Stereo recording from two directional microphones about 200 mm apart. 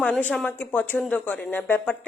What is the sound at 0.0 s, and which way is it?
Speech, 5° left (ahead or behind).